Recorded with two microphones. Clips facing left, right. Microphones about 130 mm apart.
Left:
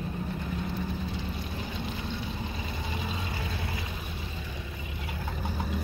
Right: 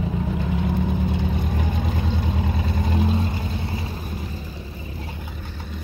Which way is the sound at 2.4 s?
60° right (ahead or behind).